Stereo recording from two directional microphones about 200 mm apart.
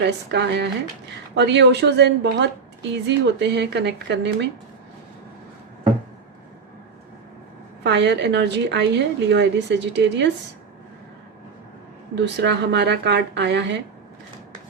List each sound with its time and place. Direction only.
0.0 s a woman's voice: 60° right (ahead or behind)
7.9 s a woman's voice: 60° right (ahead or behind)
12.1 s a woman's voice: 60° right (ahead or behind)